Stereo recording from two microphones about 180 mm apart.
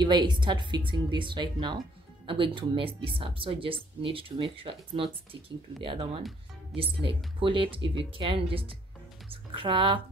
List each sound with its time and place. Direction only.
0.0 s speech: 25° right (ahead or behind)